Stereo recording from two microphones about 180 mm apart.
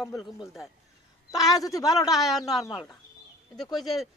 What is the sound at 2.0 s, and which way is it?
Speech, centre (ahead or behind).